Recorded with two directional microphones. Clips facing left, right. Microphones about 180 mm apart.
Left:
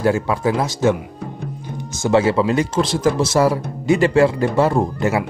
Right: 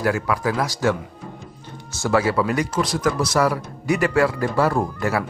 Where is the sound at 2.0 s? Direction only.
25° left (ahead or behind).